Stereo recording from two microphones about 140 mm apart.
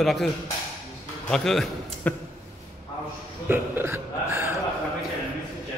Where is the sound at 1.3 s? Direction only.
5° left (ahead or behind).